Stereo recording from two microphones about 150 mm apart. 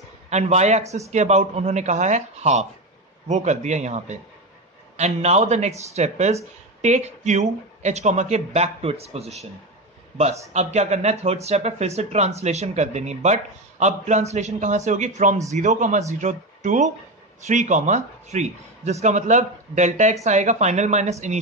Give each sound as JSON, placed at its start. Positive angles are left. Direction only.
{"t": 0.3, "sound": "speech", "side_deg": -50}